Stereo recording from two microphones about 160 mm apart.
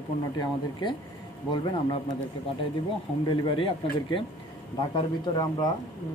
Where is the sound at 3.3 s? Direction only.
30° left (ahead or behind).